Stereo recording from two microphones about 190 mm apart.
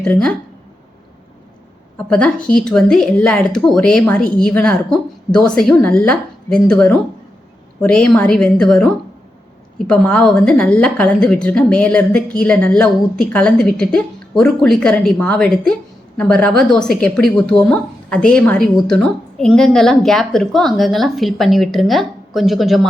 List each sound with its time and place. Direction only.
0.0 s a woman's voice: 5° left (ahead or behind)
2.0 s a woman's voice: 5° left (ahead or behind)